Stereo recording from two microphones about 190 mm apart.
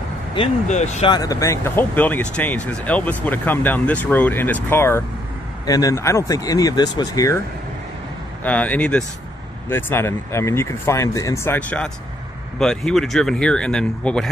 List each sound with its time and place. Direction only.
0.7 s speech: 35° left (ahead or behind)
1.1 s speech: 20° left (ahead or behind)
8.5 s speech: 5° left (ahead or behind)